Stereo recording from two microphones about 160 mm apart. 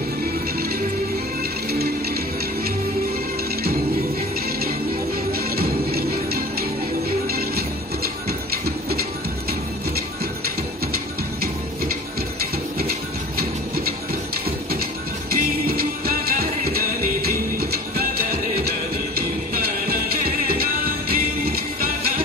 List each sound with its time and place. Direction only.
5.3 s music: 75° right (ahead or behind)
15.3 s music: 65° right (ahead or behind)